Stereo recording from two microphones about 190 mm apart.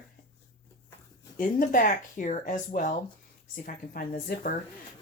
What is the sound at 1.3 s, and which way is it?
Speech, 45° left (ahead or behind).